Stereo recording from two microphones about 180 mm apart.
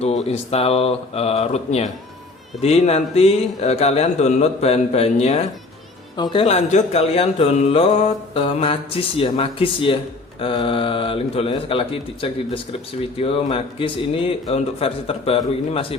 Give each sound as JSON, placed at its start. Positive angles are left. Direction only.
{"t": 0.0, "sound": "speech", "side_deg": 35}